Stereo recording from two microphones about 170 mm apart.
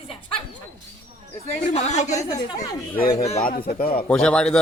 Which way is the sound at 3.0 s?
60° left (ahead or behind).